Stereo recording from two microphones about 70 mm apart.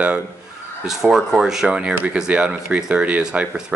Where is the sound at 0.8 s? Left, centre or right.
Centre.